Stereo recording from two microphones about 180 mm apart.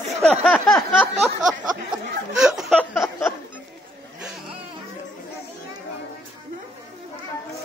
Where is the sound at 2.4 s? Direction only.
Centre (ahead or behind).